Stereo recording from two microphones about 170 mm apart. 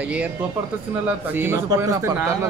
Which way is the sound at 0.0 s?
10° right (ahead or behind).